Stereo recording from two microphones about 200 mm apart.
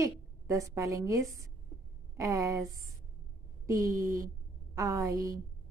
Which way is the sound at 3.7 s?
15° right (ahead or behind).